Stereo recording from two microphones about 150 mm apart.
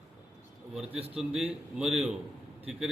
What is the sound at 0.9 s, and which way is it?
Speech, 40° right (ahead or behind).